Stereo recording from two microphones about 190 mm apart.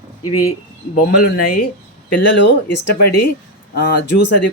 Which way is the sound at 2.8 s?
55° left (ahead or behind).